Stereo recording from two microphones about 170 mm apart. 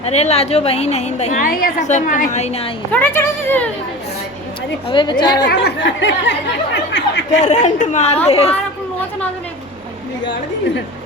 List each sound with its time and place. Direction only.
0.0 s a woman's voice: 40° left (ahead or behind)
2.9 s speech: 10° left (ahead or behind)
4.9 s a woman's voice: 30° left (ahead or behind)
5.5 s speech: 80° left
7.3 s a woman's voice: 45° left (ahead or behind)